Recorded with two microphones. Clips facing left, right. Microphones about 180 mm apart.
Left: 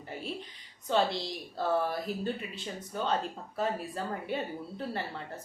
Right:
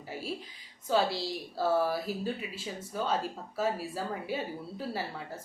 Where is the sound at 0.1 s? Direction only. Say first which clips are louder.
Right 1 dB; 5° right (ahead or behind).